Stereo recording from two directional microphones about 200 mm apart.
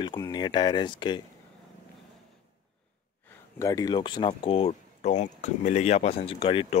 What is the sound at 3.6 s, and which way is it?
Speech, 15° left (ahead or behind).